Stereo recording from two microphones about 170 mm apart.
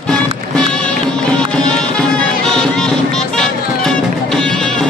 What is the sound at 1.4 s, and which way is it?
Music, 5° left (ahead or behind).